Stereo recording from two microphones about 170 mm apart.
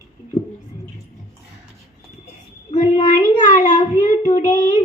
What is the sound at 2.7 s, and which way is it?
Child singing, 40° left (ahead or behind).